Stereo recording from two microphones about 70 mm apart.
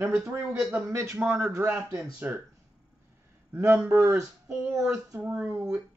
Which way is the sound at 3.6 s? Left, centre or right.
Right.